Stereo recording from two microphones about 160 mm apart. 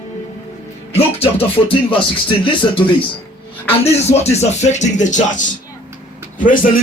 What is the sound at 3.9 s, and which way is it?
Speech, 40° left (ahead or behind).